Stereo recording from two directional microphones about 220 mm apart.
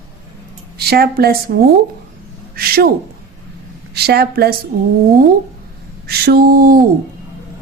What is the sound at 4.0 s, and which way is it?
Speech, 45° right (ahead or behind).